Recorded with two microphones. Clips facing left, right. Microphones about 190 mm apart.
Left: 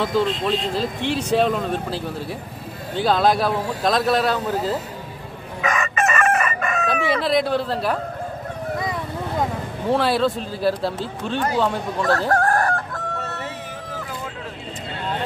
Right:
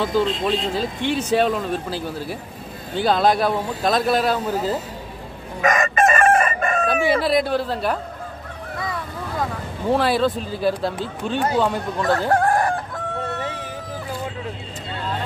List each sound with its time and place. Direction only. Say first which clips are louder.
0.0 s speech: even; centre (ahead or behind)
5.6 s chicken: right 4 dB; 40° right (ahead or behind)
6.9 s speech: right 1 dB; 5° right (ahead or behind)
9.8 s speech: right 1 dB; centre (ahead or behind)
12.3 s chicken: right 1 dB; 15° right (ahead or behind)